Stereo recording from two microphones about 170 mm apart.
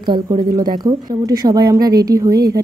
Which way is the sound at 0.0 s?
25° right (ahead or behind).